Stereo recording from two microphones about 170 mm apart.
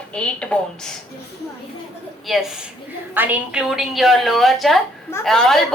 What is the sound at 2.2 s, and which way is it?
A woman's voice, centre (ahead or behind).